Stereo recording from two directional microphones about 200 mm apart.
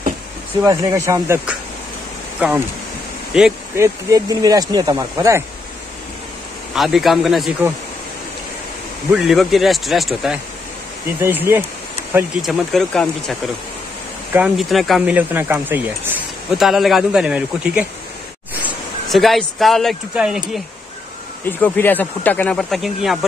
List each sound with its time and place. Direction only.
0.7 s speech: 15° right (ahead or behind)
3.7 s speech: 15° right (ahead or behind)
6.7 s speech: centre (ahead or behind)
9.1 s speech: centre (ahead or behind)
11.1 s speech: 10° right (ahead or behind)
21.5 s speech: 10° left (ahead or behind)